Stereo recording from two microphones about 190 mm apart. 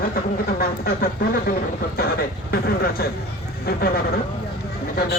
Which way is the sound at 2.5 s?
55° left (ahead or behind).